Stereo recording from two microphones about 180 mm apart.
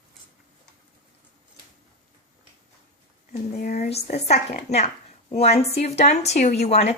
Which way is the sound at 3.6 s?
40° left (ahead or behind).